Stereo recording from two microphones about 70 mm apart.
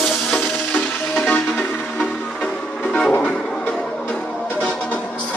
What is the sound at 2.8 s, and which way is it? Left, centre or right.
Music, centre.